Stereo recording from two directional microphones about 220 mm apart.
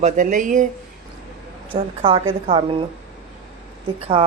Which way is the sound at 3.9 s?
25° right (ahead or behind).